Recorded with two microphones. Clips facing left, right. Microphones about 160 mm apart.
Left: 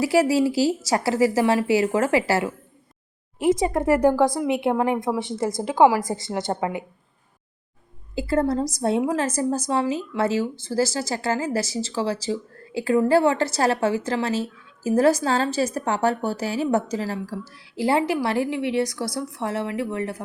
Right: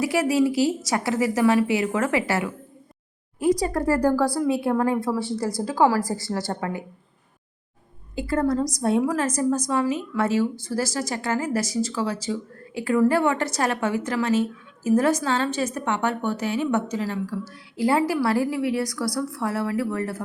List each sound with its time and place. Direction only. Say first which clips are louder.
0.0 s a woman's voice: left 2 dB; 30° left (ahead or behind)
8.3 s a woman's voice: left 1 dB; 30° left (ahead or behind)